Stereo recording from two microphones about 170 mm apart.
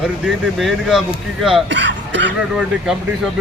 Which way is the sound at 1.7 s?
90° right.